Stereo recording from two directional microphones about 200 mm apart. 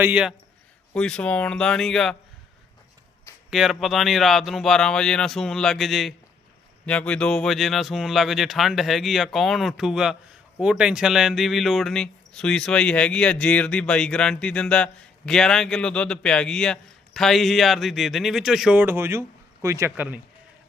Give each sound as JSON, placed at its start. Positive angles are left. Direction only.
{"t": 0.0, "sound": "a man's voice", "side_deg": -5}
{"t": 0.9, "sound": "speech", "side_deg": 5}
{"t": 3.5, "sound": "a man's voice", "side_deg": 0}